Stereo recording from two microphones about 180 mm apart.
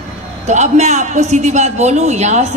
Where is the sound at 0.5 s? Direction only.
40° right (ahead or behind).